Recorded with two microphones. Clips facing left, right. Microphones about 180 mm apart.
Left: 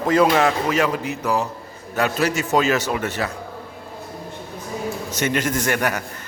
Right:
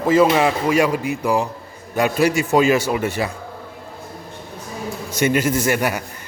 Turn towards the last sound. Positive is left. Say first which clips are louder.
# right 2 dB
turn(degrees=-10)  # may be behind; listen again after turning